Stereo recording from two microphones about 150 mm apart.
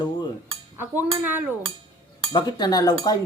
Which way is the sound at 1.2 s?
10° right (ahead or behind).